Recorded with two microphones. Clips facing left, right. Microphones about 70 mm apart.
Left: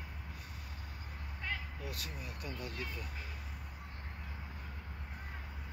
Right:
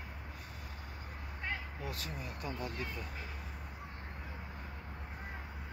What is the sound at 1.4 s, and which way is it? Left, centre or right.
Vehicle, right.